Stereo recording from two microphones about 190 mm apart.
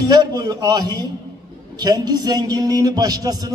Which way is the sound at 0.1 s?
20° right (ahead or behind).